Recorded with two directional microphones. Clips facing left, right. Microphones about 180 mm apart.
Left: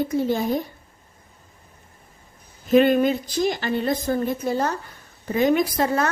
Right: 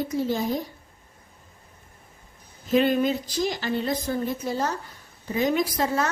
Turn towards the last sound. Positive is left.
turn(degrees=60)  # may be behind; listen again after turning